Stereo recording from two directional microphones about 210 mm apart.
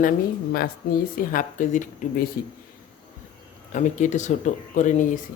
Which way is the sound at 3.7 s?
35° left (ahead or behind).